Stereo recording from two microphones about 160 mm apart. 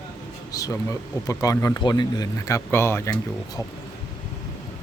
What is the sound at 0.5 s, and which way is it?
Speech, 20° left (ahead or behind).